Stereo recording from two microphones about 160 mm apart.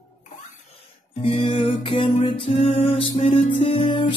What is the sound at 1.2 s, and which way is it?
Music, 35° left (ahead or behind).